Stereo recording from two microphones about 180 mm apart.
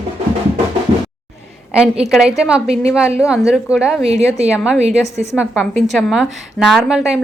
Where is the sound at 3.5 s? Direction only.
5° right (ahead or behind).